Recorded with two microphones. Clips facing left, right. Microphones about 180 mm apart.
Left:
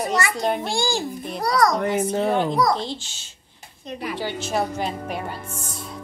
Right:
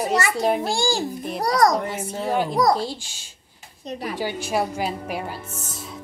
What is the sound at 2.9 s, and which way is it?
Speech, 10° right (ahead or behind).